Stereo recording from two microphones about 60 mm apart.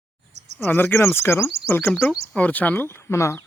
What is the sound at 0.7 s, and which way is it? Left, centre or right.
Speech, left.